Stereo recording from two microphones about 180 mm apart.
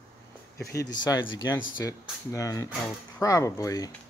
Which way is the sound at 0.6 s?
65° left (ahead or behind).